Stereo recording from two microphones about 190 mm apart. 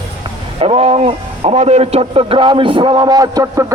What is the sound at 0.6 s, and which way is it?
A man's voice, 30° right (ahead or behind).